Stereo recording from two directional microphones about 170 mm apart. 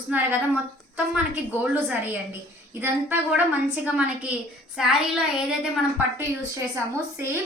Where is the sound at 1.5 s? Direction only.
10° right (ahead or behind).